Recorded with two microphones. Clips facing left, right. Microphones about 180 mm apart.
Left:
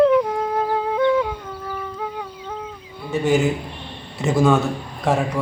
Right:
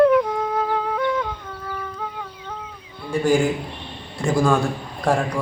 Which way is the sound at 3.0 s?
5° left (ahead or behind).